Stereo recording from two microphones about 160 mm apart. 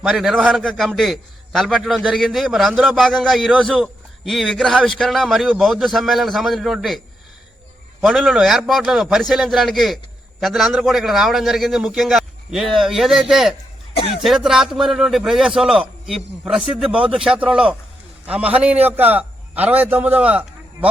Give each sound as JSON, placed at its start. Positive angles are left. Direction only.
{"t": 0.0, "sound": "a man's voice", "side_deg": 0}
{"t": 8.0, "sound": "a man's voice", "side_deg": 0}
{"t": 13.9, "sound": "speech", "side_deg": 35}
{"t": 14.2, "sound": "a man's voice", "side_deg": 0}